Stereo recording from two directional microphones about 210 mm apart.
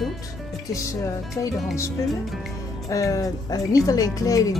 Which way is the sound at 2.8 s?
15° left (ahead or behind).